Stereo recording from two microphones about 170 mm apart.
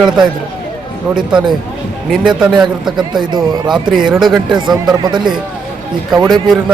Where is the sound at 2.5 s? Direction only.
25° right (ahead or behind).